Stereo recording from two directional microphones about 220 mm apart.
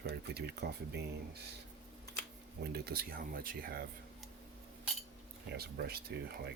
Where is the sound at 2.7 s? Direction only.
45° right (ahead or behind).